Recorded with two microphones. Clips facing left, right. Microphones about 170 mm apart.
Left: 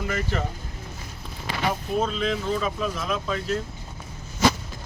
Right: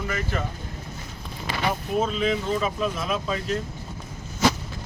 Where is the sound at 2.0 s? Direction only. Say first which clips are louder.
Right 3 dB; 5° right (ahead or behind).